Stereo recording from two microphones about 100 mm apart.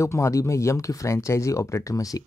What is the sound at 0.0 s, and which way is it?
Speech, 30° left (ahead or behind).